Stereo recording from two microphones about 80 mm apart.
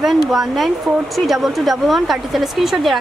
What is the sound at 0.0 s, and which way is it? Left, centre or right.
A woman's voice, centre.